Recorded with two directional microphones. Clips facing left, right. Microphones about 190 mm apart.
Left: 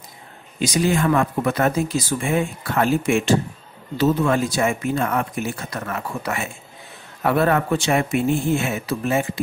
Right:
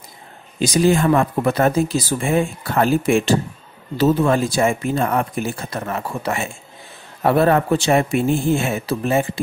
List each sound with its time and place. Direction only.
0.6 s speech: 30° right (ahead or behind)